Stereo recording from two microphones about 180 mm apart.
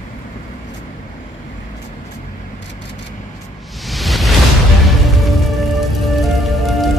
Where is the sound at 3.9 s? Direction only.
Centre (ahead or behind).